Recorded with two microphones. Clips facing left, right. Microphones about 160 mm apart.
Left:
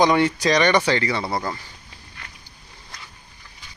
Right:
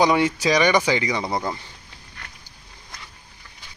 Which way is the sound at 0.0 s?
10° right (ahead or behind).